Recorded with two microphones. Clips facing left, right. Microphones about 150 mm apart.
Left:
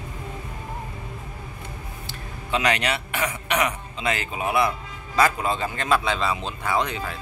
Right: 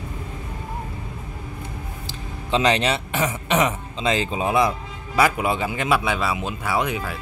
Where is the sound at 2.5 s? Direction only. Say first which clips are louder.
Right 4 dB; 25° right (ahead or behind).